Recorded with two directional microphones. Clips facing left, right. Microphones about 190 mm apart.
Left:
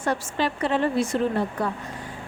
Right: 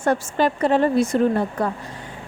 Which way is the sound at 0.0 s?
50° right (ahead or behind).